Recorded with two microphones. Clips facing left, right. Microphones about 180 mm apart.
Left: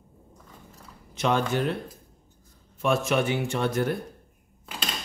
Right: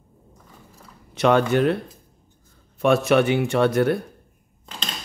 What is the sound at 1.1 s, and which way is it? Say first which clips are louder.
Speech: right 7 dB; 65° right (ahead or behind).